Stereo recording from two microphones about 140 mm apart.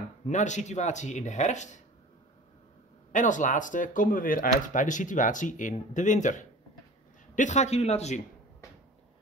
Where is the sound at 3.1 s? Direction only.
65° left (ahead or behind).